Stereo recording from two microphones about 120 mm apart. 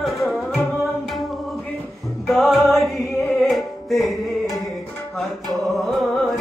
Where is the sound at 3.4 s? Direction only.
Centre (ahead or behind).